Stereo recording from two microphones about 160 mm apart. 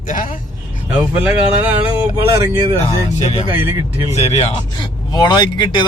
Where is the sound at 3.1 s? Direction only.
45° left (ahead or behind).